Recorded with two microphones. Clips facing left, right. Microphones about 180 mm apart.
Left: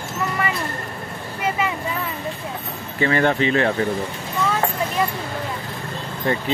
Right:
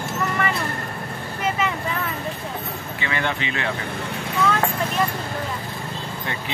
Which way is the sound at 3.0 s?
40° left (ahead or behind).